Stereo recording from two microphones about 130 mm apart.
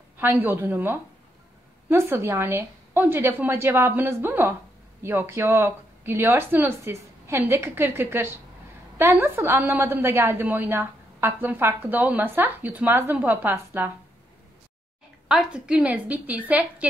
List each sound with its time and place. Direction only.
0.2 s a woman's voice: 15° right (ahead or behind)
15.2 s a woman's voice: 5° right (ahead or behind)